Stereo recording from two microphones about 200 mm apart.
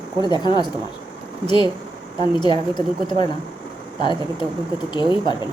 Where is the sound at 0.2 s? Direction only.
20° left (ahead or behind).